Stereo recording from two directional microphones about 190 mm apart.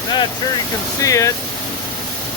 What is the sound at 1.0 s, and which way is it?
Speech, 15° left (ahead or behind).